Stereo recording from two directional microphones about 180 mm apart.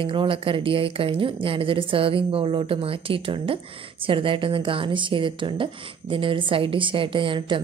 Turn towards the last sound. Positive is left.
turn(degrees=-25)  # may be behind; listen again after turning